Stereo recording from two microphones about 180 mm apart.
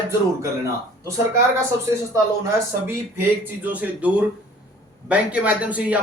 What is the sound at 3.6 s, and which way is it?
Speech, 10° right (ahead or behind).